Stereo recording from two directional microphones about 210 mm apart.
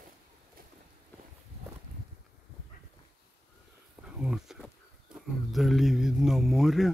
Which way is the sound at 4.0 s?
5° right (ahead or behind).